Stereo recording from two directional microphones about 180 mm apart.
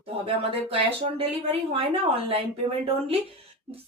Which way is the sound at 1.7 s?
35° right (ahead or behind).